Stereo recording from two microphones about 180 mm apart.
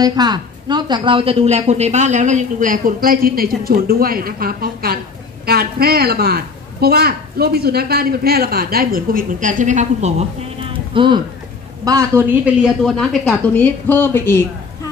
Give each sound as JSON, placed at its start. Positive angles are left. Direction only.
{"t": 0.0, "sound": "a woman's voice", "side_deg": -20}
{"t": 10.9, "sound": "speech", "side_deg": -30}
{"t": 11.8, "sound": "speech", "side_deg": -15}